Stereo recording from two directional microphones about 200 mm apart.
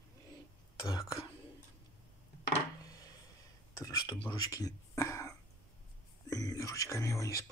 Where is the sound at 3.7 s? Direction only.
15° left (ahead or behind).